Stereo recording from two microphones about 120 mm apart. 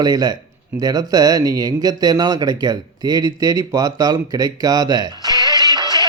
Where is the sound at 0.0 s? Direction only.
35° right (ahead or behind).